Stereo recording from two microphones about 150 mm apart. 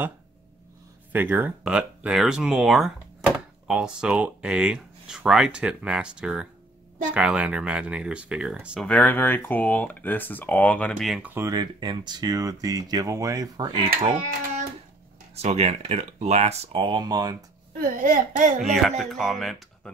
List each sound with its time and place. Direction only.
1.1 s speech: 15° right (ahead or behind)
8.8 s speech: 10° left (ahead or behind)
11.2 s speech: 15° right (ahead or behind)
11.5 s speech: 30° right (ahead or behind)
15.3 s speech: 45° right (ahead or behind); by 17.4 s 25° right (ahead or behind)
17.7 s speech: 65° right (ahead or behind)
18.6 s speech: centre (ahead or behind)